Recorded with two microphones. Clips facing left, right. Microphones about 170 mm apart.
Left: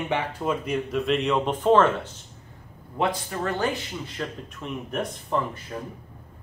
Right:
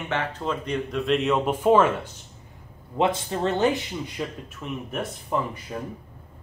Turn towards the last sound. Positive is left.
turn(degrees=-15)  # may be behind; listen again after turning